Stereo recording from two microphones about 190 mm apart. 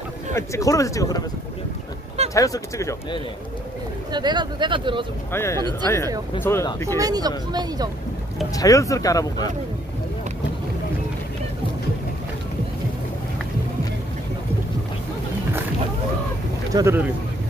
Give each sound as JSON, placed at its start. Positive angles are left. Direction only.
{"t": 0.3, "sound": "speech", "side_deg": 15}
{"t": 2.3, "sound": "speech", "side_deg": 15}
{"t": 4.1, "sound": "speech", "side_deg": -25}
{"t": 5.3, "sound": "speech", "side_deg": 15}
{"t": 7.0, "sound": "speech", "side_deg": -20}
{"t": 8.5, "sound": "speech", "side_deg": 15}
{"t": 16.7, "sound": "speech", "side_deg": -15}